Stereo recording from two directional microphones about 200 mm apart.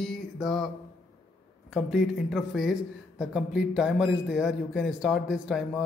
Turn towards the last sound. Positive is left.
turn(degrees=0)  # may be behind; listen again after turning